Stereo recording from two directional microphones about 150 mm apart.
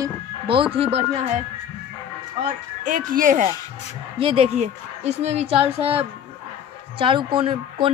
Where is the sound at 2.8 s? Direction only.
65° right (ahead or behind).